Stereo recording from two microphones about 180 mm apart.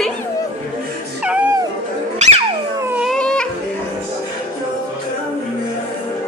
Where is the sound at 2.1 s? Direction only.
40° right (ahead or behind).